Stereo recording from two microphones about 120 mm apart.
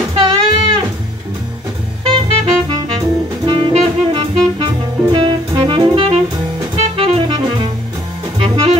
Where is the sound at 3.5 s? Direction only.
45° right (ahead or behind).